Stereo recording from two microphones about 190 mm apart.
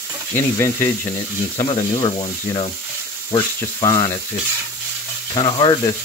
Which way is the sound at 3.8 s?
15° left (ahead or behind).